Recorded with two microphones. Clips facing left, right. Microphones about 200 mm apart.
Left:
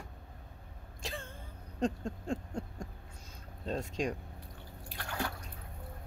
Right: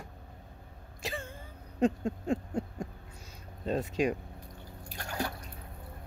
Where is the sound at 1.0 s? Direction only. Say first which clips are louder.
Right 4 dB; 5° right (ahead or behind).